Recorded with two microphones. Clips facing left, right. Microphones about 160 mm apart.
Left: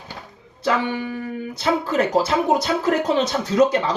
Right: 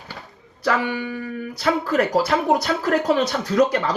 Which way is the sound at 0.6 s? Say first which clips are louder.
Even; 25° left (ahead or behind).